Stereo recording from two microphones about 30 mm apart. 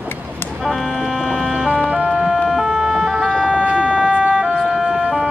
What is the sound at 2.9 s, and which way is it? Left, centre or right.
Emergency vehicle, centre.